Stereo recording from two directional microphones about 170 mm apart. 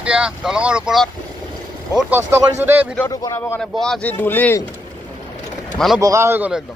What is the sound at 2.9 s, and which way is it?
Speech, 20° left (ahead or behind).